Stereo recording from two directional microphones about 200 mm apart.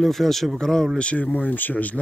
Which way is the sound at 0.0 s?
Centre (ahead or behind).